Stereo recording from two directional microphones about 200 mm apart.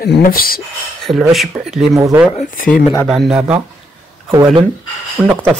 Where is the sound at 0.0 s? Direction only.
50° left (ahead or behind).